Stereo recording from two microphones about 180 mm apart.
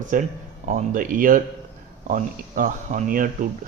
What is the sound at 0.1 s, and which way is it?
Speech, 40° right (ahead or behind).